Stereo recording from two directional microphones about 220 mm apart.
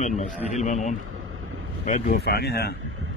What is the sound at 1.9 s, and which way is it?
Speech, 45° left (ahead or behind).